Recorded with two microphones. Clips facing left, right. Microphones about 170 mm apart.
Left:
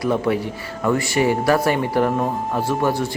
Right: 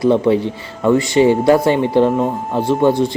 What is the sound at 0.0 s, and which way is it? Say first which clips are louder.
Speech: right 7 dB; 25° right (ahead or behind).